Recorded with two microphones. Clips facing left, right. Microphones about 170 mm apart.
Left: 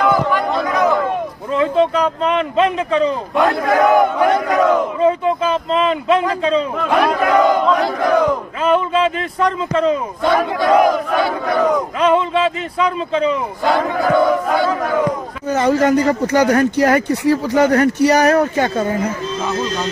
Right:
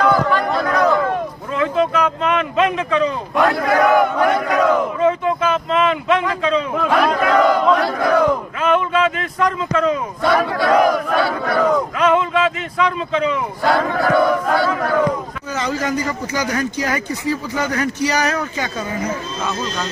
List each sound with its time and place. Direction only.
0.0 s a sound: 15° left (ahead or behind)
1.5 s speech: 30° left (ahead or behind)
3.3 s battle cry: 20° left (ahead or behind)
5.0 s speech: 30° left (ahead or behind)
6.9 s battle cry: 15° left (ahead or behind)
8.6 s speech: 30° left (ahead or behind)
10.2 s battle cry: 20° left (ahead or behind)
12.0 s speech: 30° left (ahead or behind)
13.7 s battle cry: 15° left (ahead or behind)
15.5 s speech: 55° left (ahead or behind)